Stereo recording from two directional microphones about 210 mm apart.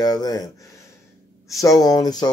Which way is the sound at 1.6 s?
15° left (ahead or behind).